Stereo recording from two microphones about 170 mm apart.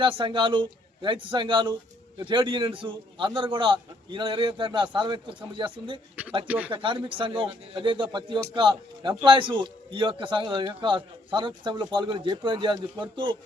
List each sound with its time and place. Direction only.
0.0 s a man's voice: 30° right (ahead or behind)
6.2 s speech: 10° right (ahead or behind)
6.7 s a man's voice: 30° right (ahead or behind)